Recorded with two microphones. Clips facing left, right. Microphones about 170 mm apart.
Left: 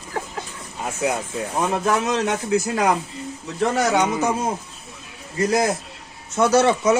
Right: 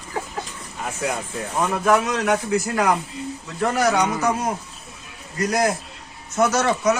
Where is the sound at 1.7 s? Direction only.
25° left (ahead or behind).